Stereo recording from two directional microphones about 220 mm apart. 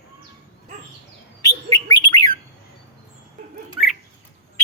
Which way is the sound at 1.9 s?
20° left (ahead or behind).